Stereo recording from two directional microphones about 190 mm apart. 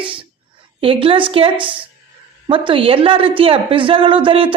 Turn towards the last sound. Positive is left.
turn(degrees=-25)  # may be behind; listen again after turning